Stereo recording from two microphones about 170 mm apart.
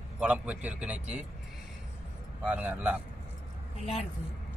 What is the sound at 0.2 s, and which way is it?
A man's voice, 5° right (ahead or behind).